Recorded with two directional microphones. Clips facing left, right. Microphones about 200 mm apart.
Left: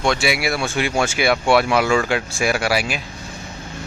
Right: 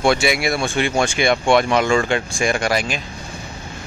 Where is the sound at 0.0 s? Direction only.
Centre (ahead or behind).